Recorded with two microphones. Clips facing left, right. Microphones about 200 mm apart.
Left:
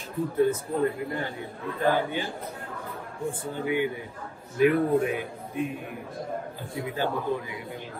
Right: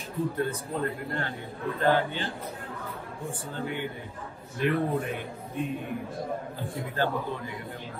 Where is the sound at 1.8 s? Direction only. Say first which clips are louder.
Even; 15° left (ahead or behind).